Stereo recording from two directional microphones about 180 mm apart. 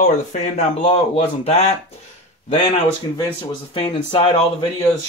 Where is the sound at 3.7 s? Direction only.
30° left (ahead or behind).